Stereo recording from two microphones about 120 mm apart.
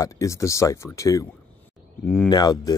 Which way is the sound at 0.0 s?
25° left (ahead or behind).